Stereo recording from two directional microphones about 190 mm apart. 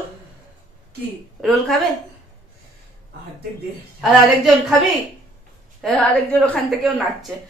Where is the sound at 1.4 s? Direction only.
Centre (ahead or behind).